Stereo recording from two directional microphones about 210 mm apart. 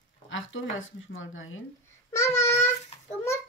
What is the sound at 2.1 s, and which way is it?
Child singing, 10° left (ahead or behind).